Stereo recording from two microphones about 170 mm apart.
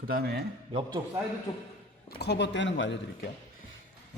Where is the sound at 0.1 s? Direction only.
65° right (ahead or behind).